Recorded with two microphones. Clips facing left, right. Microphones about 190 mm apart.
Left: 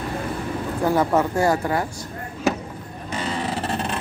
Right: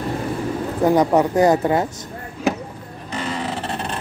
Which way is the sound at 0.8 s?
15° right (ahead or behind).